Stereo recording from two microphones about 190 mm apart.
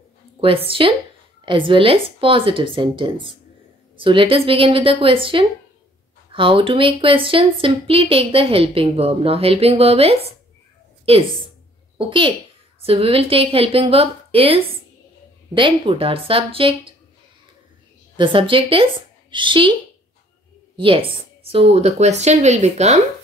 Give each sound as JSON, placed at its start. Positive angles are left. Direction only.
{"t": 0.4, "sound": "speech", "side_deg": -30}
{"t": 12.0, "sound": "speech", "side_deg": -25}
{"t": 18.1, "sound": "a woman's voice", "side_deg": -25}
{"t": 20.7, "sound": "a woman's voice", "side_deg": -25}